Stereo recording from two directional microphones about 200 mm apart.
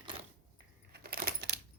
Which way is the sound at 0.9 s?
50° right (ahead or behind).